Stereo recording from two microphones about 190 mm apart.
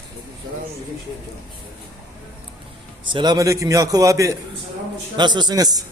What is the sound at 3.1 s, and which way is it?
A man's voice, 25° right (ahead or behind).